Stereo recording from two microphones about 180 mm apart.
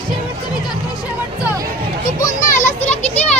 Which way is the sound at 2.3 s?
45° left (ahead or behind).